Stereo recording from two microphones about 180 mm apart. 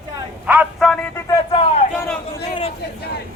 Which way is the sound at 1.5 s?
30° left (ahead or behind).